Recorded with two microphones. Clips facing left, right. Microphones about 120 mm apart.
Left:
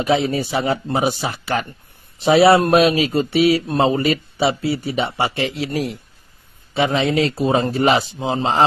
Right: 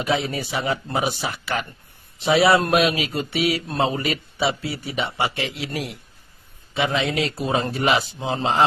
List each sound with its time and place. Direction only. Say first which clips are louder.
0.0 s speech: left 6 dB; 30° left (ahead or behind)
7.7 s speech: left 3 dB; 40° left (ahead or behind)
8.2 s a man's voice: left 4 dB; 20° left (ahead or behind)